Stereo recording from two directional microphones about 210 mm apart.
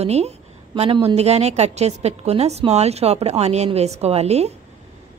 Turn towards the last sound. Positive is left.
turn(degrees=-30)  # may be behind; listen again after turning